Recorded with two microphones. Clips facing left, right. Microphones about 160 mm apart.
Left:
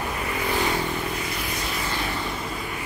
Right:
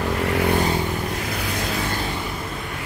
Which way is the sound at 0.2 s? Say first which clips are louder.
Right 8 dB; 75° right (ahead or behind).